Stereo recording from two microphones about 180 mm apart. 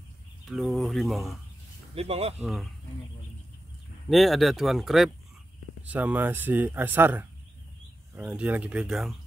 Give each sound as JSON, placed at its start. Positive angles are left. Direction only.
{"t": 0.5, "sound": "speech", "side_deg": 0}
{"t": 2.0, "sound": "speech", "side_deg": -35}
{"t": 2.4, "sound": "speech", "side_deg": 0}
{"t": 4.1, "sound": "speech", "side_deg": 0}